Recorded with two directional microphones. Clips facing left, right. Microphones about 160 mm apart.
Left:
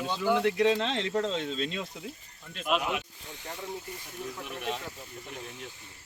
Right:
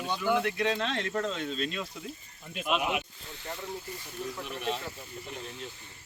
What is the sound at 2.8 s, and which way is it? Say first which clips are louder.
Speech: right 1 dB; 10° right (ahead or behind).